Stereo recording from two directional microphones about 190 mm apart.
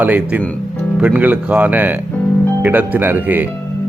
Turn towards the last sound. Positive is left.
turn(degrees=-10)  # may be behind; listen again after turning